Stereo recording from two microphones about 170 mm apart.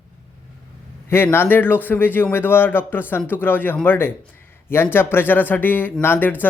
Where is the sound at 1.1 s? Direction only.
15° left (ahead or behind).